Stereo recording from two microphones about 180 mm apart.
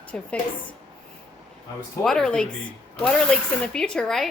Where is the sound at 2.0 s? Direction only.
5° left (ahead or behind).